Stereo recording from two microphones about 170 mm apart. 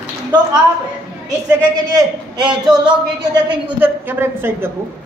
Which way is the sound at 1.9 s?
25° right (ahead or behind).